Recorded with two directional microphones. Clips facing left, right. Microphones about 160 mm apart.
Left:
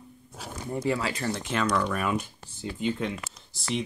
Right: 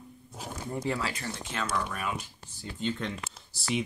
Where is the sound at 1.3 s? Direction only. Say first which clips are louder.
Left 6 dB; 70° left (ahead or behind); by 2.3 s 55° left (ahead or behind).